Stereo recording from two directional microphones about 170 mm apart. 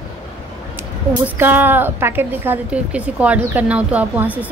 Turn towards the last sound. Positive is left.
turn(degrees=-10)  # may be behind; listen again after turning